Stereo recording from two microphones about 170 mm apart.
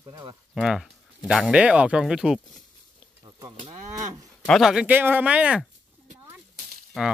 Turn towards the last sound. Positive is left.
turn(degrees=0)  # may be behind; listen again after turning